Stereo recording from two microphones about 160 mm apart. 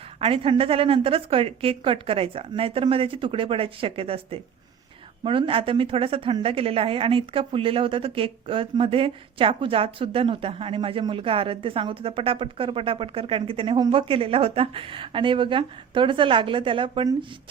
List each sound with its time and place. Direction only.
0.2 s a woman's voice: 35° right (ahead or behind)